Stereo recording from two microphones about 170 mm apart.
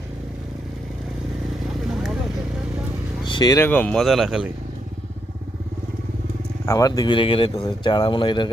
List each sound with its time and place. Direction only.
3.2 s vehicle: 25° left (ahead or behind)
3.6 s speech: 10° left (ahead or behind)
6.7 s speech: 20° left (ahead or behind)